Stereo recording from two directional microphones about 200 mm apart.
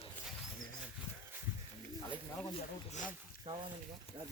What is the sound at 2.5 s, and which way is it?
Speech, 35° left (ahead or behind).